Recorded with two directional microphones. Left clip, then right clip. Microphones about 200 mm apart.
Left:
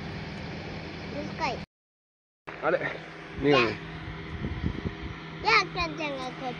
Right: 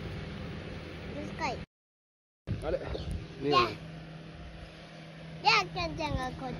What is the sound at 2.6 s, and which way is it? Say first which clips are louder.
Speech: left 8 dB; 30° left (ahead or behind).